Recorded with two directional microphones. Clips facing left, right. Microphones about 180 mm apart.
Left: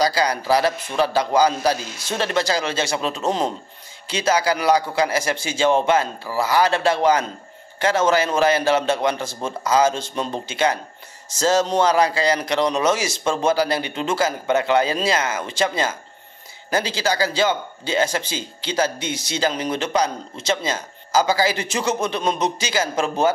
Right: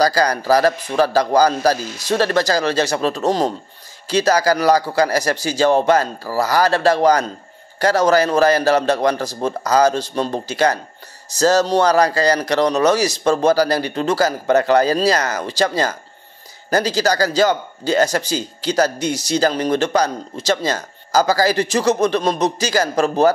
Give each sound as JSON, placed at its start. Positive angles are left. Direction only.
{"t": 0.0, "sound": "speech", "side_deg": -40}
{"t": 20.6, "sound": "speech", "side_deg": -40}